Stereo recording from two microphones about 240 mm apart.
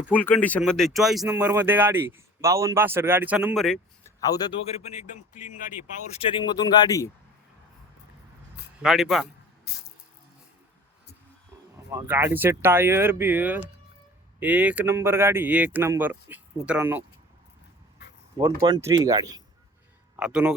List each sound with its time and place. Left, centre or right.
0.1 s speech: centre
4.2 s speech: centre
4.9 s speech: left
6.1 s speech: left
8.8 s speech: centre
11.9 s speech: centre
18.3 s speech: centre
20.1 s speech: centre